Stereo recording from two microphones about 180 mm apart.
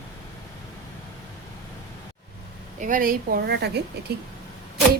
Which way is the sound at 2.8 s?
50° right (ahead or behind).